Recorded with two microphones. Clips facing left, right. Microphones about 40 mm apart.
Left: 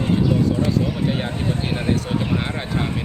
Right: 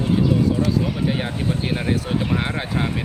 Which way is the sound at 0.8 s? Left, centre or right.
Centre.